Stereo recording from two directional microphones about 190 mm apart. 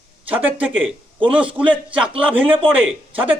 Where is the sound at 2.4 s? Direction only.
30° right (ahead or behind).